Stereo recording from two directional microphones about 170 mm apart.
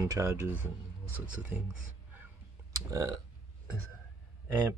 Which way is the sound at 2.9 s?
20° right (ahead or behind).